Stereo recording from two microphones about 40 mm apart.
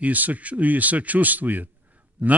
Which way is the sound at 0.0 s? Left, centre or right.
Right.